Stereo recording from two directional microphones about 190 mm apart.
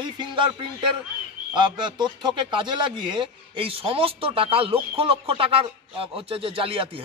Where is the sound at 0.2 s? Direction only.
25° right (ahead or behind).